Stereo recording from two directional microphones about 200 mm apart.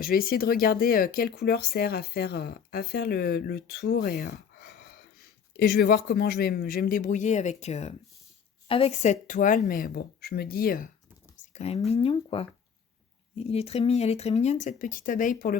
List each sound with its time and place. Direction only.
0.0 s speech: 45° left (ahead or behind)
11.5 s speech: 30° left (ahead or behind)